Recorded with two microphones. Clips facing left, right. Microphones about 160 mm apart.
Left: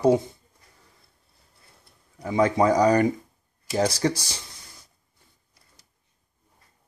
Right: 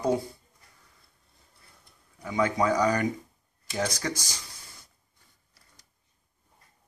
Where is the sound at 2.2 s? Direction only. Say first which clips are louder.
Left 5 dB; 35° left (ahead or behind).